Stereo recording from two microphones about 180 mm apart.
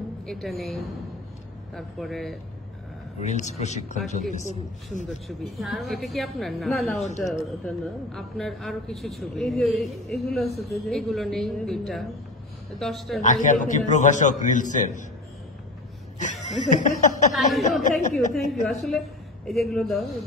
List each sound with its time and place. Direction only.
0.3 s speech: centre (ahead or behind)
3.2 s speech: 40° left (ahead or behind)
5.4 s speech: centre (ahead or behind)
13.2 s a man's voice: 45° left (ahead or behind)
16.2 s speech: 40° left (ahead or behind)
17.3 s speech: centre (ahead or behind)